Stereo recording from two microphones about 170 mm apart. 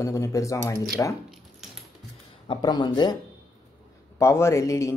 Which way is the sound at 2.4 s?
25° left (ahead or behind).